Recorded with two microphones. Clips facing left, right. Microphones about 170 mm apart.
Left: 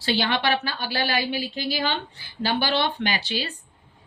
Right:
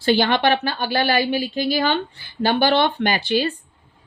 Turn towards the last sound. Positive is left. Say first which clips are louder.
# right 8 dB
turn(degrees=-50)  # may be behind; listen again after turning